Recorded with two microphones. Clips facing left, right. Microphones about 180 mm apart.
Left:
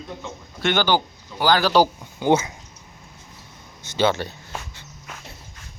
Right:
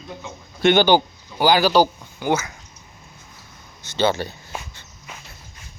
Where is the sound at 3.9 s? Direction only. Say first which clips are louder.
Even; centre (ahead or behind).